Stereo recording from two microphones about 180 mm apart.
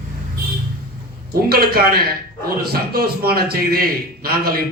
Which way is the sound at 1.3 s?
55° right (ahead or behind).